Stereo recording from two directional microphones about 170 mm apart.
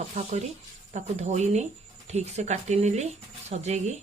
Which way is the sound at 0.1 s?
45° right (ahead or behind).